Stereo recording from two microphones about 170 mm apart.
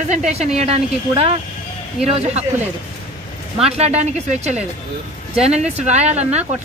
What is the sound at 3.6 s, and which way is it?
Speech, 40° right (ahead or behind).